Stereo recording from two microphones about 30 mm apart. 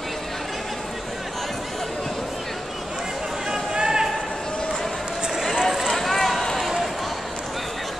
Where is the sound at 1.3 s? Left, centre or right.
Centre.